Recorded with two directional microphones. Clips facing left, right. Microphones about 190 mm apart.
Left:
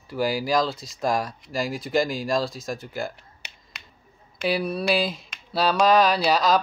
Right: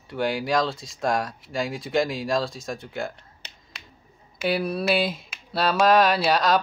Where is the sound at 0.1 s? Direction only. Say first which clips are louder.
Left 1 dB; centre (ahead or behind).